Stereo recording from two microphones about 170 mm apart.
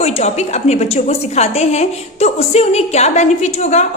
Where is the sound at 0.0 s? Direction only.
40° left (ahead or behind).